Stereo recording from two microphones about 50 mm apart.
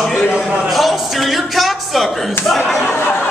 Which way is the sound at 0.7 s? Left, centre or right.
Centre.